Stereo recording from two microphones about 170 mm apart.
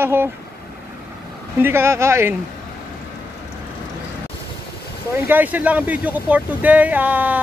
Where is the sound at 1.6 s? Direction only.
15° right (ahead or behind).